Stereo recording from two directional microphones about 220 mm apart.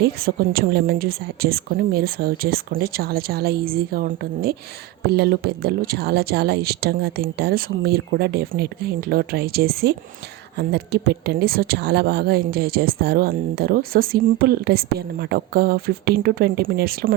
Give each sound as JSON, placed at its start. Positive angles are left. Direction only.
{"t": 0.0, "sound": "a woman's voice", "side_deg": -45}